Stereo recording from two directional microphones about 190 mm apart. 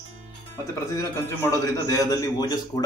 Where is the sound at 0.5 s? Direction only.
15° left (ahead or behind).